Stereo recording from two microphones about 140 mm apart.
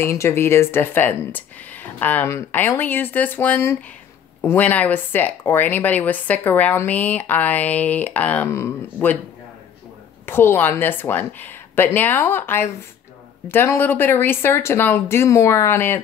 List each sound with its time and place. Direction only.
0.0 s speech: 20° left (ahead or behind)
10.2 s speech: 15° left (ahead or behind)